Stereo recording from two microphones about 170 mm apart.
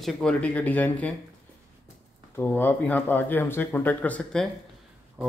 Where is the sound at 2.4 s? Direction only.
10° left (ahead or behind).